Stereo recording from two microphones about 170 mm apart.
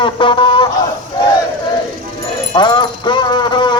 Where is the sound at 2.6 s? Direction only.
25° left (ahead or behind).